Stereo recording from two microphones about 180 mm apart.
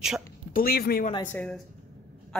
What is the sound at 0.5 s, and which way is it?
Speech, 55° left (ahead or behind).